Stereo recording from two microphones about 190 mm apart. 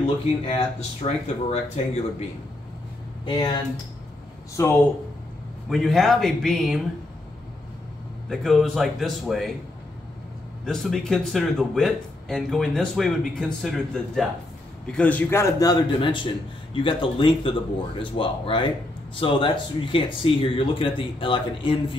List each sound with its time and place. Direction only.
0.0 s speech: 35° left (ahead or behind)
3.3 s speech: 25° left (ahead or behind)
4.6 s a man's voice: 15° left (ahead or behind)
5.7 s speech: centre (ahead or behind)
8.3 s speech: centre (ahead or behind)
10.6 s a man's voice: centre (ahead or behind); by 21.9 s 25° left (ahead or behind)